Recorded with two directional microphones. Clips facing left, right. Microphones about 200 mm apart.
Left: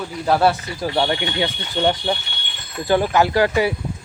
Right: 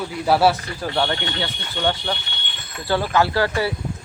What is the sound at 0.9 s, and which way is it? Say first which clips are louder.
Speech: left 2 dB; 10° left (ahead or behind).